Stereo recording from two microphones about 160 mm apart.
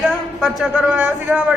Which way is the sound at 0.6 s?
5° right (ahead or behind).